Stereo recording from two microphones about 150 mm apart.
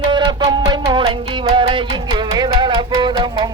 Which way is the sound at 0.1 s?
30° right (ahead or behind).